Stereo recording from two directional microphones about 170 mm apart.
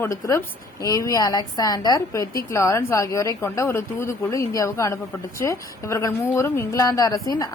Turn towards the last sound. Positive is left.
turn(degrees=20)  # may be behind; listen again after turning